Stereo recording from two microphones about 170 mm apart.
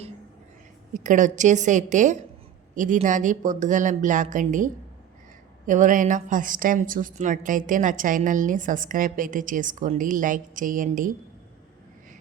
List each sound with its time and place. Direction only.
0.9 s a woman's voice: 50° right (ahead or behind)